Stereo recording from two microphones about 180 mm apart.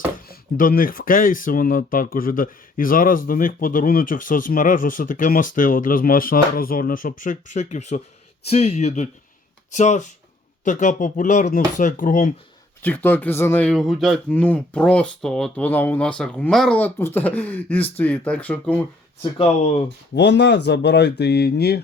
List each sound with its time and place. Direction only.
0.3 s speech: 55° left (ahead or behind)
12.8 s speech: 10° left (ahead or behind)
19.2 s speech: 30° left (ahead or behind)
20.1 s speech: 70° left (ahead or behind)